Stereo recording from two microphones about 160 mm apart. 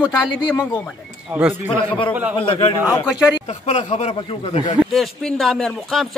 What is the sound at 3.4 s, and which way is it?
Speech, 45° left (ahead or behind).